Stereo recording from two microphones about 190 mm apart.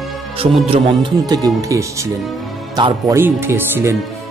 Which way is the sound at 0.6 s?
25° right (ahead or behind).